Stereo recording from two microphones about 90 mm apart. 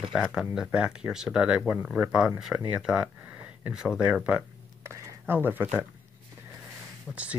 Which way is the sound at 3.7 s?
10° right (ahead or behind).